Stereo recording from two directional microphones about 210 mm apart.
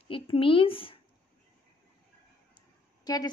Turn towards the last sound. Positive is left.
turn(degrees=20)  # may be behind; listen again after turning